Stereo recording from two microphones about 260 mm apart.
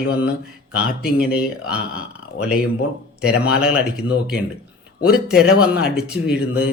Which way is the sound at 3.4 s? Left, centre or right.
Centre.